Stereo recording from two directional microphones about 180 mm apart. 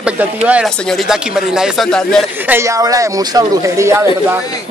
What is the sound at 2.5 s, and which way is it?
Speech, 15° right (ahead or behind).